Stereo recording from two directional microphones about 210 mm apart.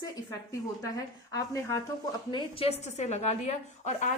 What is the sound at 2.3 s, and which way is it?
A woman's voice, 25° left (ahead or behind).